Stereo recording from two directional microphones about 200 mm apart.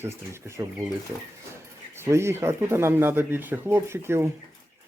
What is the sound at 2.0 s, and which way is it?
Speech, 15° right (ahead or behind).